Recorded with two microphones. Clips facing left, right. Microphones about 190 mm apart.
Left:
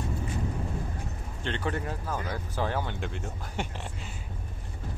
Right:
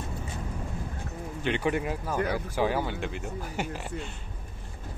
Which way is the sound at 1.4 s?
10° right (ahead or behind).